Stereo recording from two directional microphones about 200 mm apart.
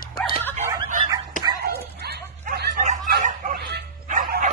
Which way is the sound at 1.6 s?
50° right (ahead or behind).